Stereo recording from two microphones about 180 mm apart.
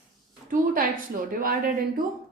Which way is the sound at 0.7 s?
50° right (ahead or behind).